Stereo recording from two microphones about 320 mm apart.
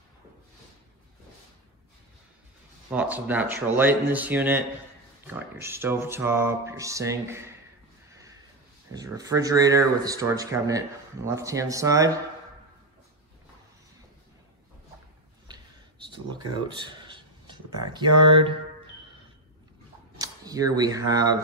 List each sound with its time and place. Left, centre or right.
2.9 s speech: centre
5.2 s music: centre
8.1 s a sound: centre
8.9 s music: centre
16.7 s a sound: centre
18.0 s speech: right
20.2 s speech: centre